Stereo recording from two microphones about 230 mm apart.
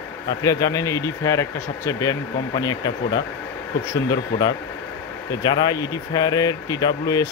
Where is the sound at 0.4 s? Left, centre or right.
Centre.